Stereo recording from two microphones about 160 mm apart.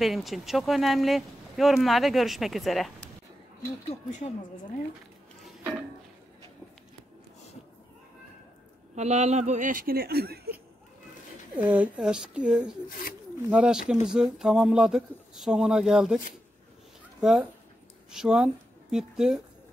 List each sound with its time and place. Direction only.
0.0 s speech: centre (ahead or behind)
3.9 s a woman's voice: 45° left (ahead or behind)
8.9 s a man's voice: 45° right (ahead or behind); by 10.6 s 75° right (ahead or behind)
11.5 s a woman's voice: 10° right (ahead or behind)
17.2 s speech: 5° right (ahead or behind)